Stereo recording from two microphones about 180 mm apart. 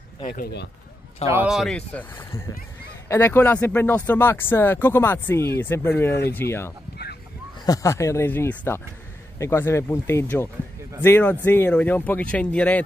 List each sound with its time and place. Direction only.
0.3 s speech: 65° left (ahead or behind)
1.2 s a man's voice: 10° right (ahead or behind)
1.5 s speech: centre (ahead or behind)